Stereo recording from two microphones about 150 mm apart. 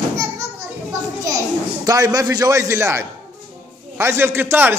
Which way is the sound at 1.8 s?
25° right (ahead or behind).